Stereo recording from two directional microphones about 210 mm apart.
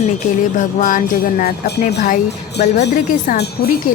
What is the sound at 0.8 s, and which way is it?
Speech, 40° left (ahead or behind).